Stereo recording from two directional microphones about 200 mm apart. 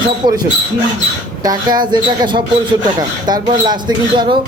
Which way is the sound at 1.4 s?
20° right (ahead or behind).